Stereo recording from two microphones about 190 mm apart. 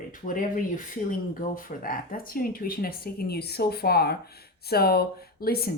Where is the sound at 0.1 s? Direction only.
45° left (ahead or behind).